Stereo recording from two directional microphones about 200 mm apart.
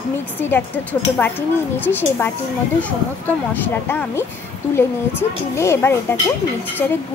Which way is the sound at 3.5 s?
10° left (ahead or behind).